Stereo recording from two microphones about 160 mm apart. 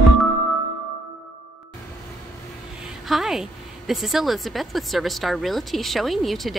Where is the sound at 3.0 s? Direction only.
Centre (ahead or behind).